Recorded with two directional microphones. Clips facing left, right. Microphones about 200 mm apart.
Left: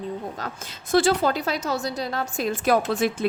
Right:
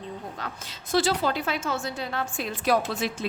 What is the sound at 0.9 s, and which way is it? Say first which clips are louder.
Speech: left 4 dB; 50° left (ahead or behind).